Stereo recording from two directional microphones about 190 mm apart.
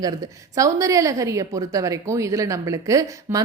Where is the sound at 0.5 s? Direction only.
15° right (ahead or behind).